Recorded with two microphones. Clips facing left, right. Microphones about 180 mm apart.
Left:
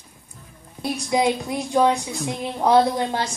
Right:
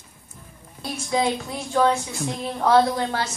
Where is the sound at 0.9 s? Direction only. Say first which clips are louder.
Left 2 dB; 15° left (ahead or behind).